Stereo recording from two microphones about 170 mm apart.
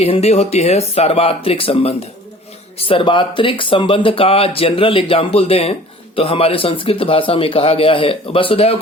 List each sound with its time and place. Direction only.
0.0 s speech: 35° left (ahead or behind)